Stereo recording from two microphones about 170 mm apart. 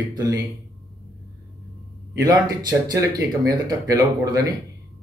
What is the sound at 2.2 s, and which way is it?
Speech, 25° right (ahead or behind).